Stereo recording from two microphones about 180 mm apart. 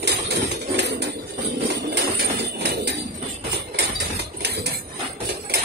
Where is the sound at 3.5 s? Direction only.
65° right (ahead or behind).